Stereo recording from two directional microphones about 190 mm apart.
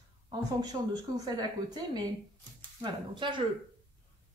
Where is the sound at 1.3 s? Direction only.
20° right (ahead or behind).